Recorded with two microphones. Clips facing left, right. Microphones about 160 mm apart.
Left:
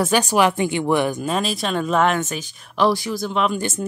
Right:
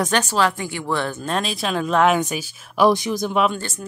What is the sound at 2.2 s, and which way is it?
Speech, 10° right (ahead or behind).